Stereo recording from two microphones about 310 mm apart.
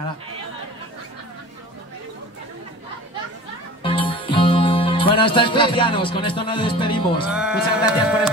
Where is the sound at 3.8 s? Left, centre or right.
Centre.